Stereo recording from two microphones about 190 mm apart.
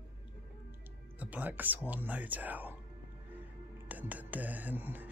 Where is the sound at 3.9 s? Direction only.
10° right (ahead or behind).